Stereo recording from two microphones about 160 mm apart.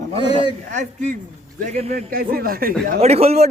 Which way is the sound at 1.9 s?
65° right (ahead or behind).